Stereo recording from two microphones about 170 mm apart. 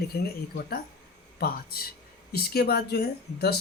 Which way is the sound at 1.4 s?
60° left (ahead or behind).